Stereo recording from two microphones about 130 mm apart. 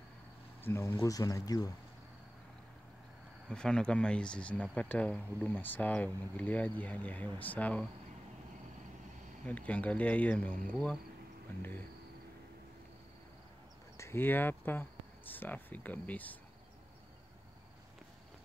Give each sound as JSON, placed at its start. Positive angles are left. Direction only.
{"t": 0.7, "sound": "speech", "side_deg": 20}
{"t": 3.4, "sound": "speech", "side_deg": 5}
{"t": 9.5, "sound": "speech", "side_deg": 10}
{"t": 13.9, "sound": "speech", "side_deg": 20}